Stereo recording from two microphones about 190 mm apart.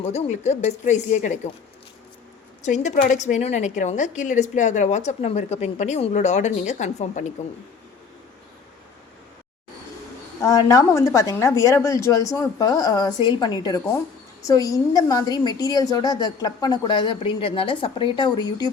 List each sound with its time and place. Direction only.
0.1 s a woman's voice: 35° left (ahead or behind)
2.6 s a woman's voice: 40° left (ahead or behind)
10.4 s a woman's voice: 20° left (ahead or behind)